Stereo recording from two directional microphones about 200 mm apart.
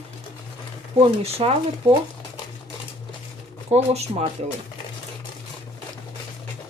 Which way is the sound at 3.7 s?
30° right (ahead or behind).